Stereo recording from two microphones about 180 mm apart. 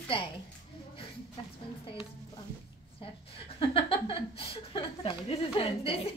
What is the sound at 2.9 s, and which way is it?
A woman's voice, 30° left (ahead or behind).